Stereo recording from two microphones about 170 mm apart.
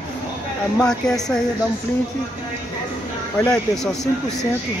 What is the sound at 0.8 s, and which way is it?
Speech, 5° left (ahead or behind).